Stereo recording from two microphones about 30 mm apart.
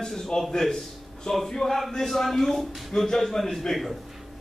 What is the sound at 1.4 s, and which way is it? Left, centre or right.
A man's voice, centre.